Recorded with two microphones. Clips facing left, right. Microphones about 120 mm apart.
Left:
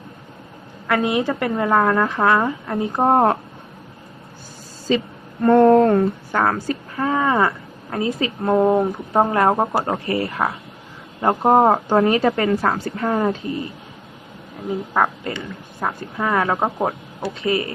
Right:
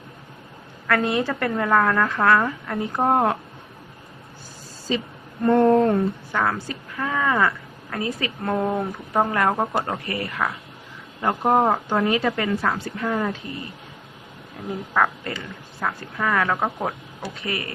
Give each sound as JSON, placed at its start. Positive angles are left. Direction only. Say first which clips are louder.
{"t": 0.9, "sound": "a woman's voice", "louder": "left 2 dB", "side_deg": 15}
{"t": 3.1, "sound": "a woman's voice", "louder": "left 4 dB", "side_deg": 35}
{"t": 5.5, "sound": "speech", "louder": "left 4 dB", "side_deg": 70}
{"t": 6.3, "sound": "a woman's voice", "louder": "left 6 dB", "side_deg": 45}
{"t": 14.9, "sound": "a woman's voice", "louder": "left 1 dB", "side_deg": 25}